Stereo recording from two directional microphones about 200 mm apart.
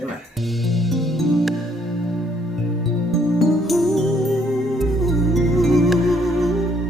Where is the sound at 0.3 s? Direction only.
Centre (ahead or behind).